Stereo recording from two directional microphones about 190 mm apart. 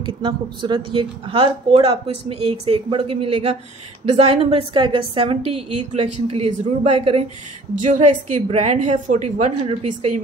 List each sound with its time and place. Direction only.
0.0 s a woman's voice: 25° right (ahead or behind)